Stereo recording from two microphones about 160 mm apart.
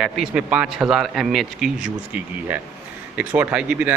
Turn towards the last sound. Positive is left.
turn(degrees=-5)  # may be behind; listen again after turning